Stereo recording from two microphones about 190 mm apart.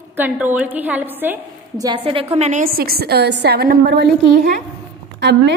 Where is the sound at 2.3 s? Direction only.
35° right (ahead or behind).